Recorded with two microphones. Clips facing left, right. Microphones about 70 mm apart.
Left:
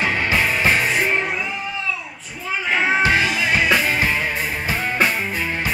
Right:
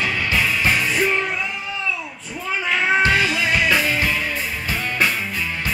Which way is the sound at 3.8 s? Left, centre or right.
Left.